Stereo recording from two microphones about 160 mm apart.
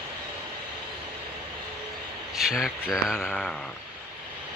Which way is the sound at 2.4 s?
5° right (ahead or behind).